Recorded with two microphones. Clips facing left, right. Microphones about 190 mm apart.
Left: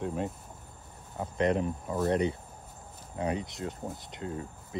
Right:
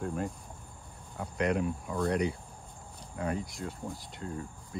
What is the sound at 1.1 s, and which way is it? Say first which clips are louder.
Speech: left 2 dB; 30° left (ahead or behind).